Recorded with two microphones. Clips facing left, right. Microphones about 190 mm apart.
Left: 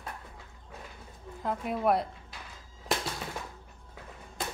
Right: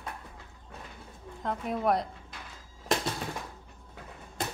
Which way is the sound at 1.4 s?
Centre (ahead or behind).